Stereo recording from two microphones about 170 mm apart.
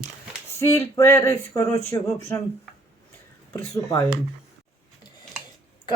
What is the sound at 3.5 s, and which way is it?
Speech, 20° left (ahead or behind).